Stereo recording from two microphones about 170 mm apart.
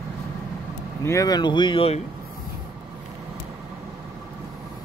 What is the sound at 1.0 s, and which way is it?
Speech, 20° left (ahead or behind).